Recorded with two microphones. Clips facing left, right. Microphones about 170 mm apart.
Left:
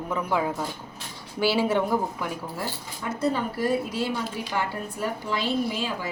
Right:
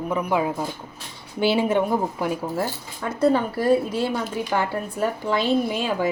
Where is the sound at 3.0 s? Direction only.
55° right (ahead or behind).